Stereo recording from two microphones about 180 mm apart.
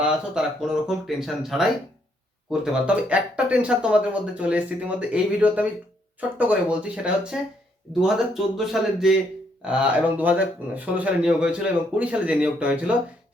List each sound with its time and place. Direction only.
0.0 s speech: 5° right (ahead or behind)